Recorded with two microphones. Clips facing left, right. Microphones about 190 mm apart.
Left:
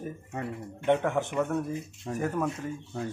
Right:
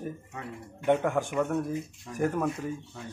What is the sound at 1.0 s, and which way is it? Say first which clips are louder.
A man's voice: even; 5° right (ahead or behind).